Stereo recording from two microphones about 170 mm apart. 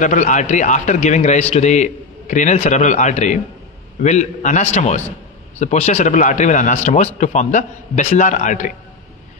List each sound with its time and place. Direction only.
0.0 s a man's voice: 45° left (ahead or behind)